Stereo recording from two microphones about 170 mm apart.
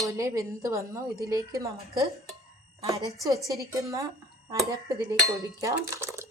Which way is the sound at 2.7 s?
20° right (ahead or behind).